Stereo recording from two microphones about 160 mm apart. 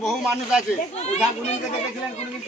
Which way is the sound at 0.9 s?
45° left (ahead or behind).